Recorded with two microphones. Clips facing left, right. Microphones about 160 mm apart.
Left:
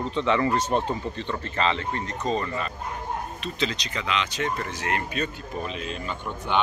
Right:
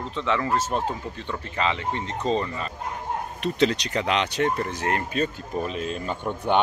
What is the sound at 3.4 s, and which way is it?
Speech, 65° right (ahead or behind).